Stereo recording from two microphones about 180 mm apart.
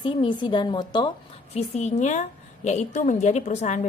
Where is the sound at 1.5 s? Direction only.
40° left (ahead or behind).